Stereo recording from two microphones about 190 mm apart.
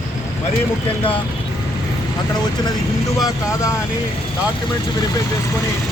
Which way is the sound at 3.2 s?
15° left (ahead or behind).